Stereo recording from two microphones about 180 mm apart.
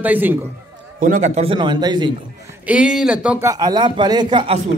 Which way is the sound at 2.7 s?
5° right (ahead or behind).